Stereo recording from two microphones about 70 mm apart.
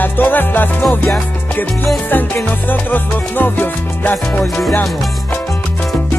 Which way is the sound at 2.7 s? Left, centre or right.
Left.